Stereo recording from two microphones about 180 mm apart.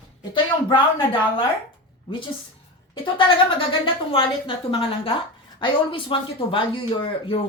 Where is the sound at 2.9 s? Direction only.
30° left (ahead or behind).